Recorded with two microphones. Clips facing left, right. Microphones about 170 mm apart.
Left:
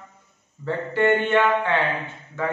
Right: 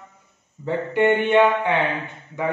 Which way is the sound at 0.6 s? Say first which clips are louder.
Right 2 dB; 15° right (ahead or behind).